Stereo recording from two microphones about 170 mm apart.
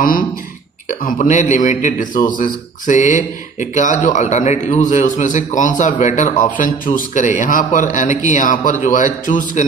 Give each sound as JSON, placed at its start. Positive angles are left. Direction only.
{"t": 0.8, "sound": "a man's voice", "side_deg": 50}